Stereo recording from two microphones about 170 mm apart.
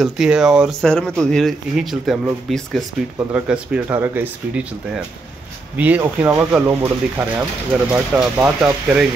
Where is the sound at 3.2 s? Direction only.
10° right (ahead or behind).